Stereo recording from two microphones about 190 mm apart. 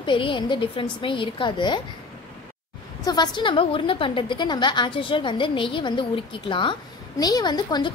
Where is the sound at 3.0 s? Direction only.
20° left (ahead or behind).